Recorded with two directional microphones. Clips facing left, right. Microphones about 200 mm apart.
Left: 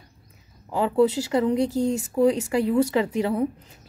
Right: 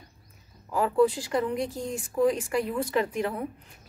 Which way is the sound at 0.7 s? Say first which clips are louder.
Left 2 dB; 25° left (ahead or behind).